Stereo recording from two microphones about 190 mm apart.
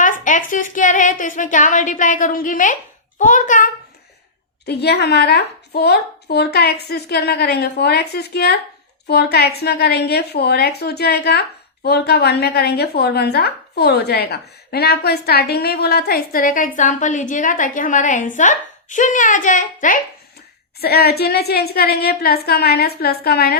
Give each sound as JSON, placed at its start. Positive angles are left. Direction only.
{"t": 0.0, "sound": "a woman's voice", "side_deg": 45}
{"t": 4.6, "sound": "a woman's voice", "side_deg": 60}
{"t": 20.8, "sound": "a woman's voice", "side_deg": 55}